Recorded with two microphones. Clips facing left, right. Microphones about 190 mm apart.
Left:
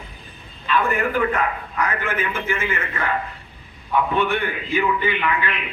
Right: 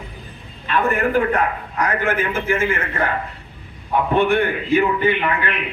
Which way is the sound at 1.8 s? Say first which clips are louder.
Right 4 dB; 45° right (ahead or behind).